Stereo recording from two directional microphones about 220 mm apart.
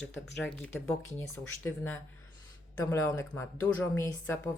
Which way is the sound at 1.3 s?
10° left (ahead or behind).